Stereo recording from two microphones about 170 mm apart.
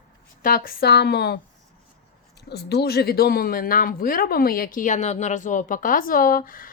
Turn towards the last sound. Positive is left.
turn(degrees=55)  # may be behind; listen again after turning